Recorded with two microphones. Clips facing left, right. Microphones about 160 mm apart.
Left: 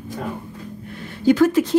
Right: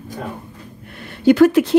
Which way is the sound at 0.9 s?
65° right (ahead or behind).